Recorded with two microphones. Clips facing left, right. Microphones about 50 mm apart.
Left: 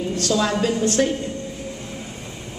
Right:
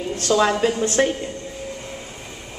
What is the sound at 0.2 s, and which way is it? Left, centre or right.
Speech, right.